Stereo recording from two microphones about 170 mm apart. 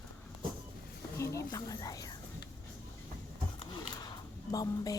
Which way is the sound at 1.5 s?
20° left (ahead or behind).